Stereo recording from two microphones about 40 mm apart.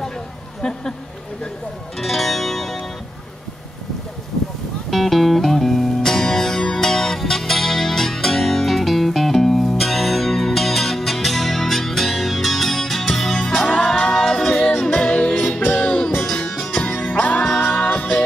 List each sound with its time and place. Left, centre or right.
0.6 s speech: centre
2.0 s music: centre
4.9 s music: centre
14.7 s music: left
15.6 s music: left
16.5 s music: centre
16.8 s music: left